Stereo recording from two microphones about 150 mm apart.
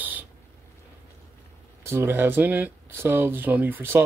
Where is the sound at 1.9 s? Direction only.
15° right (ahead or behind).